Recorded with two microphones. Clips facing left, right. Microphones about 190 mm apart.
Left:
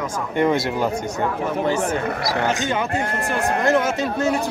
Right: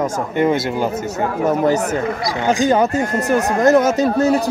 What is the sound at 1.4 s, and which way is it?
Speech, 40° right (ahead or behind).